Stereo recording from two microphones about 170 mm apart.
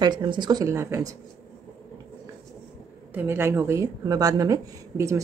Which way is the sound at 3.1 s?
10° right (ahead or behind).